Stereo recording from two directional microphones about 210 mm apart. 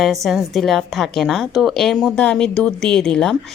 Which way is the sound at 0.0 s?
Centre (ahead or behind).